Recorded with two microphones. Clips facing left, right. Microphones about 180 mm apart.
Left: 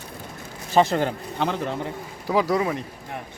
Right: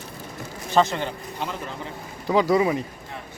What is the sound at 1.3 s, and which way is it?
Speech, 75° left (ahead or behind).